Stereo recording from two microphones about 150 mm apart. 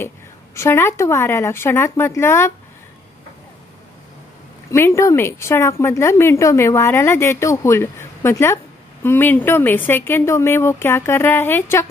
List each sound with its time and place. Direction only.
0.6 s speech: 15° left (ahead or behind)
4.6 s speech: 20° left (ahead or behind)